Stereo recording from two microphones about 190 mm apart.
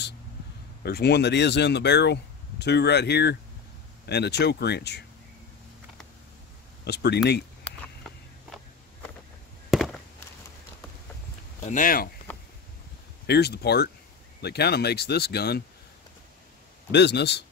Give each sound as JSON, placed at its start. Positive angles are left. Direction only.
{"t": 0.8, "sound": "speech", "side_deg": 60}
{"t": 6.8, "sound": "speech", "side_deg": 60}
{"t": 9.7, "sound": "a sound", "side_deg": 0}
{"t": 11.6, "sound": "speech", "side_deg": 45}
{"t": 13.3, "sound": "speech", "side_deg": 60}
{"t": 16.9, "sound": "speech", "side_deg": 65}